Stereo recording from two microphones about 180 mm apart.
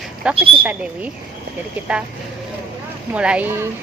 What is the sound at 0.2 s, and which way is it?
Speech, 5° right (ahead or behind).